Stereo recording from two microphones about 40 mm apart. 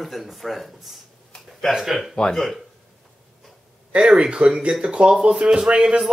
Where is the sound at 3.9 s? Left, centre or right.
Right.